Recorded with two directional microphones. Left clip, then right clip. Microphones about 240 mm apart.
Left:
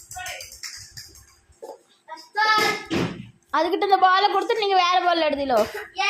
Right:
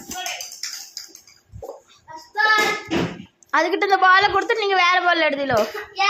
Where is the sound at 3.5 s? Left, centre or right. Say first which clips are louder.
Right 2 dB; centre.